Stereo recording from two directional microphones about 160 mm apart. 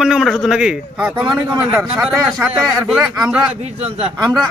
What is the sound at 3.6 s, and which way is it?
Speech, 45° right (ahead or behind).